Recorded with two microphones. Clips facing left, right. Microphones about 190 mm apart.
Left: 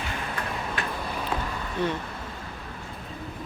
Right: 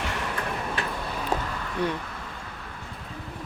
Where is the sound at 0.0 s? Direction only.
80° right.